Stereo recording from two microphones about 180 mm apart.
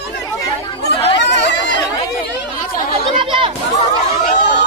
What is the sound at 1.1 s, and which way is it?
Chatter, 75° left (ahead or behind).